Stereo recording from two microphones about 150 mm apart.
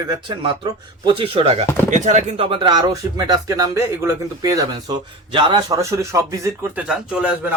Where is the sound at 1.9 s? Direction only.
55° right (ahead or behind).